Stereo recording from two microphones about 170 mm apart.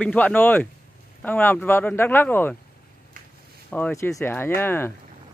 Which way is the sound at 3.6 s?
10° left (ahead or behind).